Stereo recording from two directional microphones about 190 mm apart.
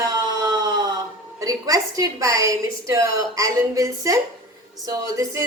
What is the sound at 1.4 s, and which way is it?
A woman's voice, 20° right (ahead or behind).